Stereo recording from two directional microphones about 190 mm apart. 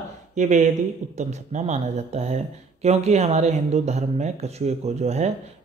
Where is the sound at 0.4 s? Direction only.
40° right (ahead or behind).